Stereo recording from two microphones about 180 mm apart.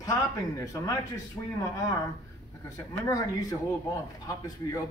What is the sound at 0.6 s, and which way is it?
Speech, 20° left (ahead or behind).